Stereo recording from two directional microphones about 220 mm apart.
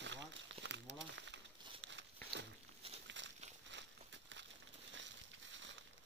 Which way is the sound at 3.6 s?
55° right (ahead or behind).